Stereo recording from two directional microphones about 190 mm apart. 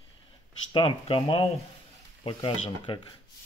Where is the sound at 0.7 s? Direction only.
30° left (ahead or behind).